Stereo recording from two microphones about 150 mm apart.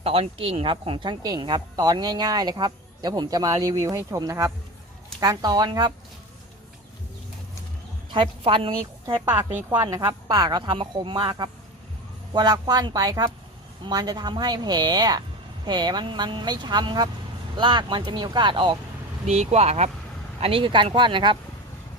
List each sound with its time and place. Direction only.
0.0 s speech: 40° right (ahead or behind)
8.1 s speech: 35° right (ahead or behind)
9.2 s a woman's voice: 15° right (ahead or behind); by 18.8 s 35° right (ahead or behind)
19.2 s speech: 45° right (ahead or behind)